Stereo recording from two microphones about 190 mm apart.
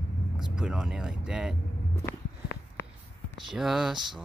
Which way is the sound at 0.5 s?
5° right (ahead or behind).